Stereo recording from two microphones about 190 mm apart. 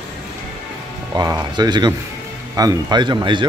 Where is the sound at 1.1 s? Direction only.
20° right (ahead or behind).